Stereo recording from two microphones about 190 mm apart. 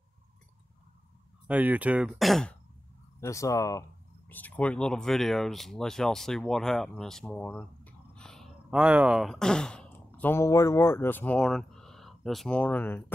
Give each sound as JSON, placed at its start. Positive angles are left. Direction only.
{"t": 1.5, "sound": "speech", "side_deg": -10}
{"t": 3.2, "sound": "speech", "side_deg": 15}